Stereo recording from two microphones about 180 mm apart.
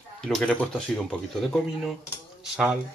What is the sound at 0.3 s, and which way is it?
Speech, 5° left (ahead or behind).